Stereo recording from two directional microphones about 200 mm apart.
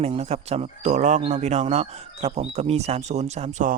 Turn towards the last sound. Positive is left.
turn(degrees=-40)  # may be behind; listen again after turning